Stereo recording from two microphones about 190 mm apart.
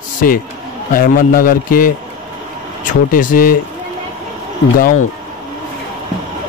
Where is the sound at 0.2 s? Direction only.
50° left (ahead or behind).